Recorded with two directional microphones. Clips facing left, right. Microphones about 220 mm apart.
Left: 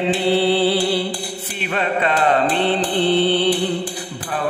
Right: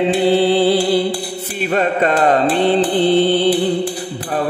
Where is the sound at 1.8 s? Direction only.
45° right (ahead or behind).